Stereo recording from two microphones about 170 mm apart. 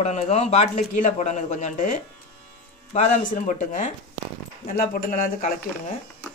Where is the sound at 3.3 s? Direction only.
45° left (ahead or behind).